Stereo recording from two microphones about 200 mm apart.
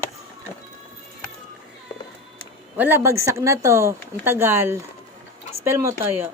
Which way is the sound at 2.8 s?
10° right (ahead or behind).